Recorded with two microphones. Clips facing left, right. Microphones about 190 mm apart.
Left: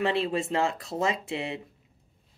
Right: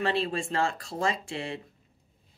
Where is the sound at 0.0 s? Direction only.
20° left (ahead or behind).